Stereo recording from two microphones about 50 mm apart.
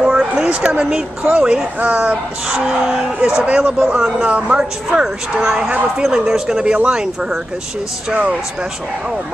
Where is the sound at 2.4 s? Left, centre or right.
Centre.